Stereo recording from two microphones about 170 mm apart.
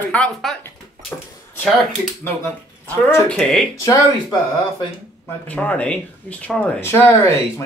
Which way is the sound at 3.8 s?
20° left (ahead or behind).